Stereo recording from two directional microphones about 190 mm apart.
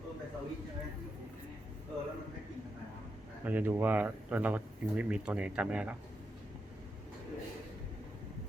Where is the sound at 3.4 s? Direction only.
10° right (ahead or behind).